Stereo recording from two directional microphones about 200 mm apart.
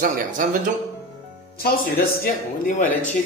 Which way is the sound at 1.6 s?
45° left (ahead or behind).